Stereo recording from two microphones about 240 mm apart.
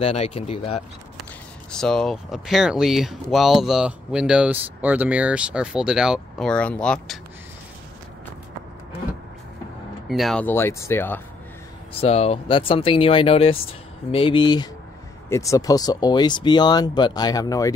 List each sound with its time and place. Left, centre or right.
0.0 s speech: left
1.7 s speech: centre
10.0 s speech: centre
11.9 s speech: left